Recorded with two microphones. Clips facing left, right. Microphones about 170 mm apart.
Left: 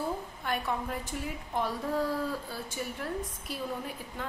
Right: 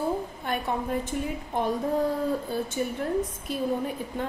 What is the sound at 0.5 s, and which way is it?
A woman's voice, 25° right (ahead or behind).